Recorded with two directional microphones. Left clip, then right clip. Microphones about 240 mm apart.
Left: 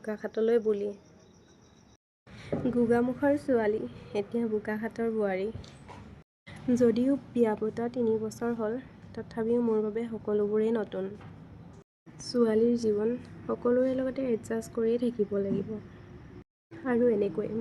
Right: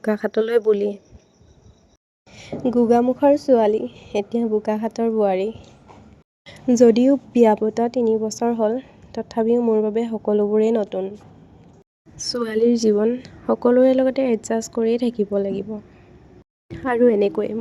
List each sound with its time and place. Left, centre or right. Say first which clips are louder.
0.0 s speech: right 9 dB; right
2.3 s speech: right 9 dB; right
12.2 s speech: right 6 dB; right
16.8 s speech: right 10 dB; right